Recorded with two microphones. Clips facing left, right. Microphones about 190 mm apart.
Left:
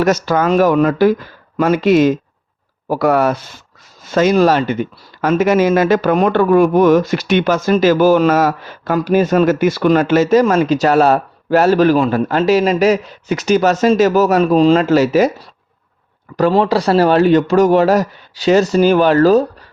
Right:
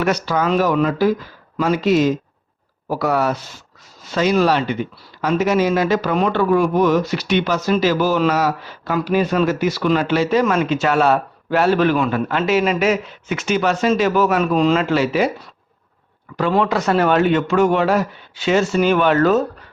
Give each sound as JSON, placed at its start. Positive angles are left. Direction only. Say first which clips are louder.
{"t": 0.0, "sound": "speech", "louder": "left 5 dB", "side_deg": 45}